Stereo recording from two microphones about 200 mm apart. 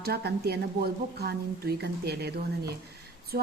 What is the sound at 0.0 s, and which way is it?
A woman's voice, 55° right (ahead or behind).